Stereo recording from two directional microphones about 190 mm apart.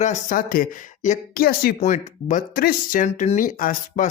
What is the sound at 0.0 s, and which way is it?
Speech, 40° left (ahead or behind).